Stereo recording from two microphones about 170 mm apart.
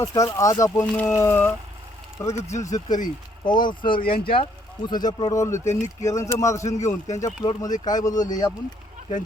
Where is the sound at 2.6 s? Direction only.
20° left (ahead or behind).